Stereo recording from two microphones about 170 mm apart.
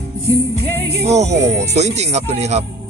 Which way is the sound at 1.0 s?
40° right (ahead or behind).